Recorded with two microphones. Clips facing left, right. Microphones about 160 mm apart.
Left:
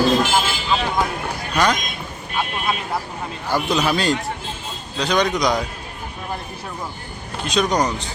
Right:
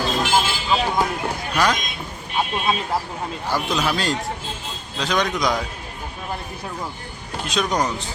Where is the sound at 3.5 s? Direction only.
Centre (ahead or behind).